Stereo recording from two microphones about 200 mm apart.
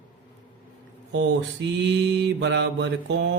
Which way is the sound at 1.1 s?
65° right (ahead or behind).